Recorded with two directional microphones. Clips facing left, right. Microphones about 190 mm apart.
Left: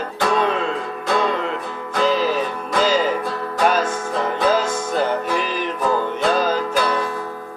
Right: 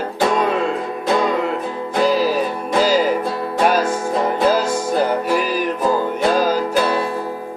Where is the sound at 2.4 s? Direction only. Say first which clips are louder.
Right 3 dB; 35° right (ahead or behind).